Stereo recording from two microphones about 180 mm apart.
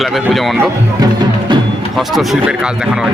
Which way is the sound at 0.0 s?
Centre (ahead or behind).